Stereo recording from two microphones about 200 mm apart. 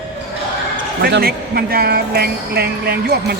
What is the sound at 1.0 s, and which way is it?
Speech, 50° right (ahead or behind).